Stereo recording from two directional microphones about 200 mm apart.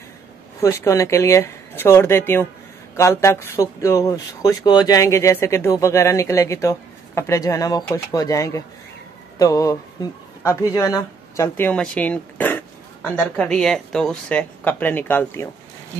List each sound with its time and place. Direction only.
0.6 s speech: 15° left (ahead or behind)